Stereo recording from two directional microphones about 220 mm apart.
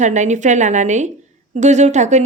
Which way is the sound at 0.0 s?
35° right (ahead or behind).